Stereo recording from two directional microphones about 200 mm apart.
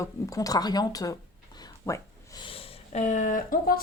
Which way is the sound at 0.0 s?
15° left (ahead or behind).